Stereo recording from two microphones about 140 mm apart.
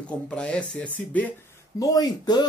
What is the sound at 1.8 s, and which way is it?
Speech, 25° left (ahead or behind).